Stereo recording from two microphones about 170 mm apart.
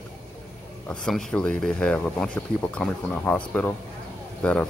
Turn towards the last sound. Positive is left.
turn(degrees=10)  # may be behind; listen again after turning